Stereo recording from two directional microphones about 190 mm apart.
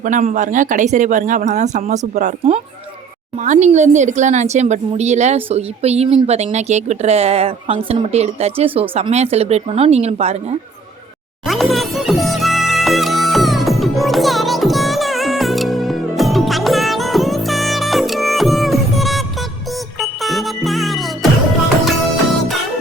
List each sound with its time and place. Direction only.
0.0 s a woman's voice: 40° right (ahead or behind)
11.4 s music: centre (ahead or behind)